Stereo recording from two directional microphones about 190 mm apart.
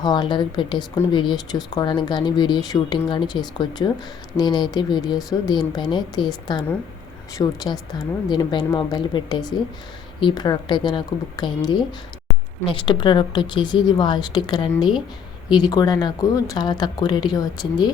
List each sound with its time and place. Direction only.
0.0 s speech: 20° left (ahead or behind)